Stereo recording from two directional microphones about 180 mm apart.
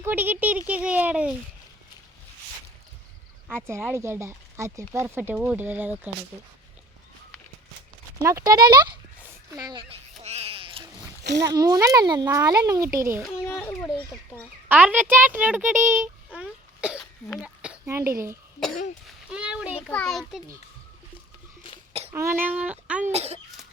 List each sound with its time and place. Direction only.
0.0 s a child's voice: 10° right (ahead or behind)
3.5 s speech: 10° right (ahead or behind)
8.2 s a child's voice: 15° right (ahead or behind)
9.1 s a sound: 15° right (ahead or behind); by 10.8 s 30° right (ahead or behind)
11.2 s speech: 70° right (ahead or behind)
11.5 s a child's voice: 20° right (ahead or behind)
13.5 s a child's voice: 15° left (ahead or behind)
14.7 s a child's voice: 10° right (ahead or behind)
22.1 s speech: 15° right (ahead or behind)
23.1 s speech: 35° right (ahead or behind)